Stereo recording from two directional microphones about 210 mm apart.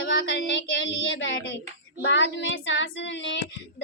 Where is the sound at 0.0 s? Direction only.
60° left (ahead or behind).